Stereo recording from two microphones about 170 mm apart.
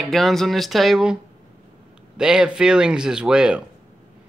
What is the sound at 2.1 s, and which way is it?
Speech, 5° right (ahead or behind).